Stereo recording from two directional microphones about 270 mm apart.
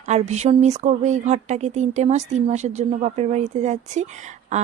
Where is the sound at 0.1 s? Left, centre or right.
Right.